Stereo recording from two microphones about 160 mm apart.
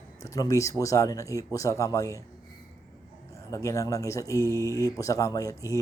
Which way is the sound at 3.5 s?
20° left (ahead or behind).